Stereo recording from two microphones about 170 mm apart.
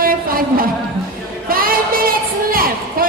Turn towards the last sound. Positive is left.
turn(degrees=-60)  # may be behind; listen again after turning